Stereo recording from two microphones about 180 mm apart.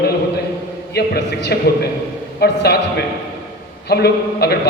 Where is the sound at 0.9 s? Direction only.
65° left (ahead or behind).